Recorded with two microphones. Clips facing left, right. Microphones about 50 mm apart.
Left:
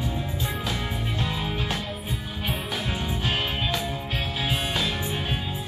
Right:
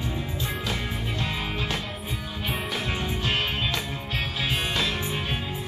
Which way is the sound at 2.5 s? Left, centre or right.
Right.